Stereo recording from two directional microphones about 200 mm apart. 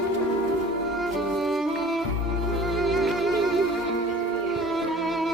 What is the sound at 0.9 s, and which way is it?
Music, centre (ahead or behind).